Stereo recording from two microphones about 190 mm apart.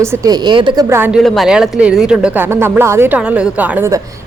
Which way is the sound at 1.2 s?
Centre (ahead or behind).